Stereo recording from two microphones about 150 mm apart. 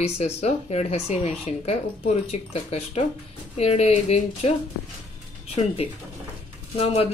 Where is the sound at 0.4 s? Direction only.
45° left (ahead or behind).